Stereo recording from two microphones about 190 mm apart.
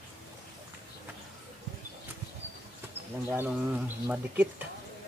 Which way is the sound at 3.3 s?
10° right (ahead or behind).